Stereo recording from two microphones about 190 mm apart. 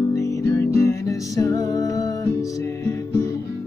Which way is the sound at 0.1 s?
15° left (ahead or behind).